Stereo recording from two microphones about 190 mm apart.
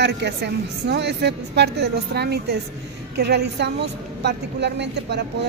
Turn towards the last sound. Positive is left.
turn(degrees=-65)  # may be behind; listen again after turning